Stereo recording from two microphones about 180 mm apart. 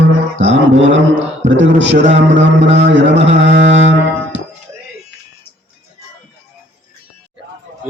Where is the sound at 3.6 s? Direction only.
90° right.